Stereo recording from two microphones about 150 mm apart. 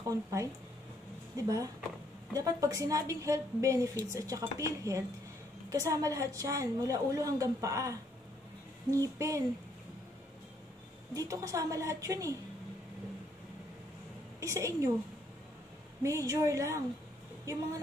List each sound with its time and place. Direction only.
0.0 s a woman's voice: 20° right (ahead or behind)
11.1 s a woman's voice: 20° right (ahead or behind)
14.4 s a woman's voice: 20° right (ahead or behind)
16.0 s a woman's voice: 20° right (ahead or behind)